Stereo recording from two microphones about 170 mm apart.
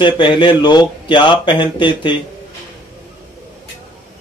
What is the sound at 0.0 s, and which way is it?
Speech, 30° left (ahead or behind).